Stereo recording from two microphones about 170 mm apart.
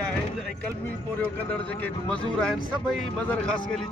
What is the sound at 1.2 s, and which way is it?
Speech, 10° left (ahead or behind).